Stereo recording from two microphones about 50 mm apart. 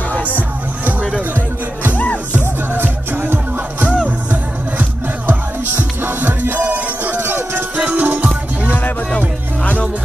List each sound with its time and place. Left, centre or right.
0.1 s music: left
1.3 s music: right
7.2 s music: right
7.7 s music: right
8.7 s music: left